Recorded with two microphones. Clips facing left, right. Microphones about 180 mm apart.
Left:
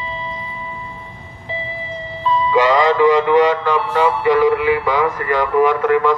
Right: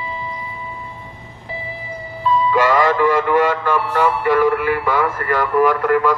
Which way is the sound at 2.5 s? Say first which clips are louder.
Left 3 dB; 15° left (ahead or behind).